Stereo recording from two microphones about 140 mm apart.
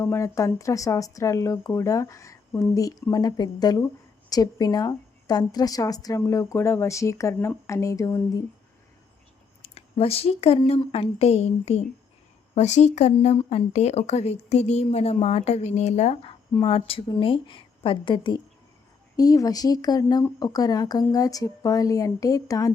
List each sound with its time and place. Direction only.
0.0 s speech: 20° left (ahead or behind)
9.6 s a sound: 50° left (ahead or behind)
10.7 s speech: 45° left (ahead or behind)
16.6 s a woman's voice: 40° left (ahead or behind); by 22.7 s 25° left (ahead or behind)